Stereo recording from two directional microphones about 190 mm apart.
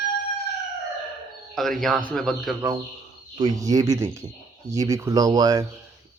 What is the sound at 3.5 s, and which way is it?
Speech, 20° right (ahead or behind).